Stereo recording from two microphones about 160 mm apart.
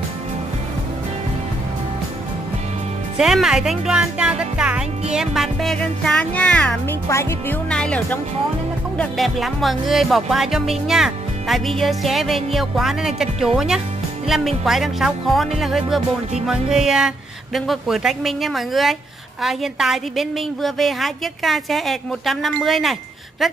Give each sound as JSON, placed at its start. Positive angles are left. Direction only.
{"t": 3.2, "sound": "a woman's voice", "side_deg": 0}
{"t": 7.7, "sound": "a woman's voice", "side_deg": 5}